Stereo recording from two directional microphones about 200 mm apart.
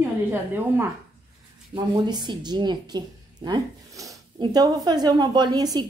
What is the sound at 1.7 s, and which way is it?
A woman's voice, 20° right (ahead or behind).